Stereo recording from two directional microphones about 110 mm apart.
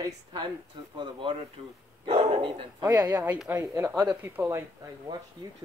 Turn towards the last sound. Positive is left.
turn(degrees=-40)  # may be behind; listen again after turning